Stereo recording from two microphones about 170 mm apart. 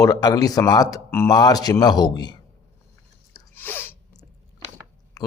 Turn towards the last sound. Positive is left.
turn(degrees=10)  # may be behind; listen again after turning